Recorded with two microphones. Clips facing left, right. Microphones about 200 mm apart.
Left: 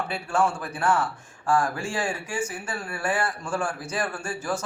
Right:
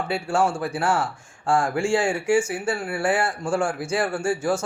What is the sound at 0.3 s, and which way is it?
Speech, 25° right (ahead or behind).